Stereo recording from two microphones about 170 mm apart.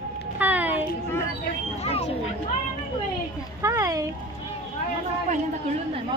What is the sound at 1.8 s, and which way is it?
Speech, 35° left (ahead or behind).